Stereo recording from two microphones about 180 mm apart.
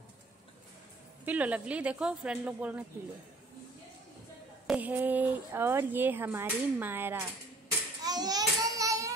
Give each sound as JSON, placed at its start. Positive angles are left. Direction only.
{"t": 1.2, "sound": "speech", "side_deg": -10}
{"t": 4.6, "sound": "speech", "side_deg": -10}
{"t": 8.0, "sound": "a sound", "side_deg": -20}